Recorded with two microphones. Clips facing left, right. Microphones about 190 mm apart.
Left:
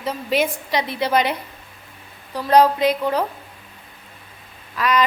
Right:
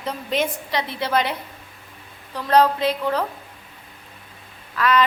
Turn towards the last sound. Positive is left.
turn(degrees=15)  # may be behind; listen again after turning